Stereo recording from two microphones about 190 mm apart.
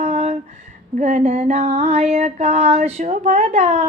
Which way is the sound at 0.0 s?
35° right (ahead or behind).